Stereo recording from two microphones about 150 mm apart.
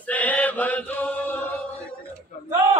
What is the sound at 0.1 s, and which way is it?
Chant, 10° left (ahead or behind).